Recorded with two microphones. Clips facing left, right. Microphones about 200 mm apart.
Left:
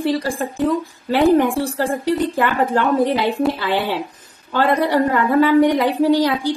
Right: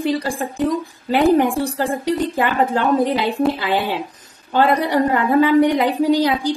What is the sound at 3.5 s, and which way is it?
A woman's voice, 15° right (ahead or behind).